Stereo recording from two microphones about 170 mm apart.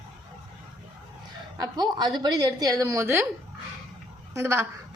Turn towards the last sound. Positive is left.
turn(degrees=-15)  # may be behind; listen again after turning